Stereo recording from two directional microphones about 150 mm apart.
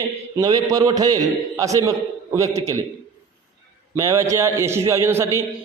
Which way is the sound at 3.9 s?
20° right (ahead or behind).